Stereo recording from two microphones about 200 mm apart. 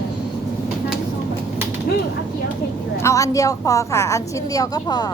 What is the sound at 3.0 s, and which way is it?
A woman's voice, 15° left (ahead or behind).